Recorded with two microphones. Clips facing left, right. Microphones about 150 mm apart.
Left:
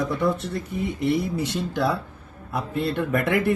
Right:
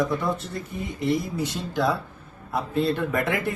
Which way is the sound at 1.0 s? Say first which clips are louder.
Even; 65° left (ahead or behind).